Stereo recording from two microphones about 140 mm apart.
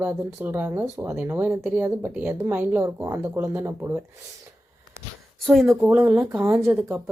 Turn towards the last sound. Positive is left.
turn(degrees=-20)  # may be behind; listen again after turning